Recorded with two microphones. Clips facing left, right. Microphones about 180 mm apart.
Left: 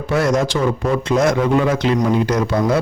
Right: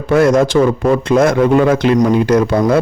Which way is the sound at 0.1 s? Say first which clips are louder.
Right 7 dB; 55° right (ahead or behind).